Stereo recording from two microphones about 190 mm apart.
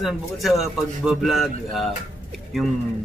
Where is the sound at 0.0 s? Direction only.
Centre (ahead or behind).